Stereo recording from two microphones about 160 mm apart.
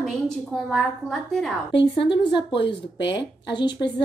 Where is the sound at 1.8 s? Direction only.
90° left.